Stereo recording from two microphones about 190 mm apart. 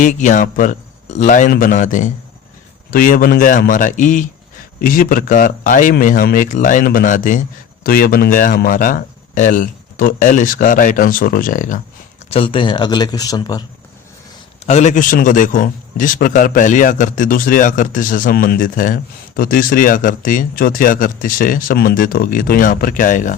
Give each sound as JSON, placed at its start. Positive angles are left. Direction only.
{"t": 0.0, "sound": "a man's voice", "side_deg": 40}
{"t": 12.3, "sound": "speech", "side_deg": 30}
{"t": 14.7, "sound": "a man's voice", "side_deg": 40}